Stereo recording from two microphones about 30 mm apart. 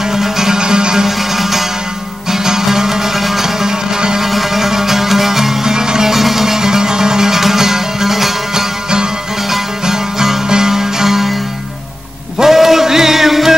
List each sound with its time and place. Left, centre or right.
0.1 s music: centre
0.6 s music: right
1.0 s music: centre
6.1 s music: centre
12.4 s music: centre